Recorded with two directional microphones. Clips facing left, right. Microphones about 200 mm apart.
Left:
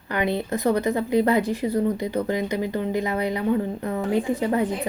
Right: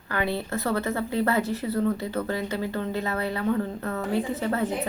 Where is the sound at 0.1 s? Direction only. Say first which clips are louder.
Left 3 dB; 20° left (ahead or behind).